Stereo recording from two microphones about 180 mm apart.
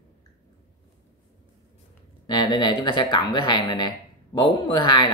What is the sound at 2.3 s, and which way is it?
Speech, 25° left (ahead or behind).